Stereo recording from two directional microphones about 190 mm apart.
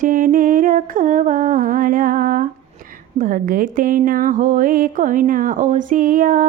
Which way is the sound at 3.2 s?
45° right (ahead or behind).